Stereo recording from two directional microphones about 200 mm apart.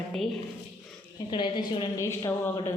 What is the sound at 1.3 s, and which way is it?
A woman's voice, 20° left (ahead or behind).